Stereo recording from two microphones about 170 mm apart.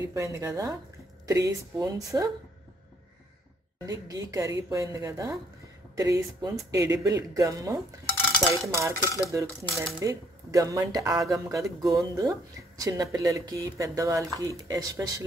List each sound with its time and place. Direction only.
0.0 s dishes: 20° right (ahead or behind)
1.2 s speech: 20° right (ahead or behind)
3.8 s speech: 20° right (ahead or behind)
8.7 s dishes: 15° right (ahead or behind)
9.9 s speech: 20° right (ahead or behind)